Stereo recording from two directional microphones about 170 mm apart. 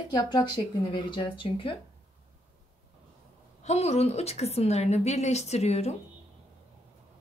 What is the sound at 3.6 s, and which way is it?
A woman's voice, 40° left (ahead or behind).